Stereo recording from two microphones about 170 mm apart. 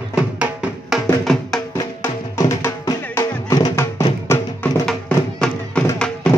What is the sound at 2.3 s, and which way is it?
Music, 20° left (ahead or behind).